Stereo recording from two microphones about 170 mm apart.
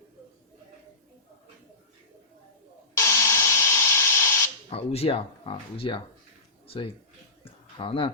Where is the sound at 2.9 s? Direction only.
20° left (ahead or behind).